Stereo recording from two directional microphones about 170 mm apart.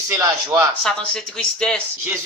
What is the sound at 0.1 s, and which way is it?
Speech, 15° right (ahead or behind).